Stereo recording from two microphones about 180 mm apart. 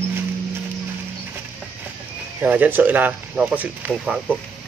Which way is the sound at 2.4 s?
10° right (ahead or behind).